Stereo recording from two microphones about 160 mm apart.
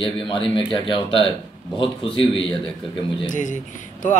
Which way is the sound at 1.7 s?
30° left (ahead or behind).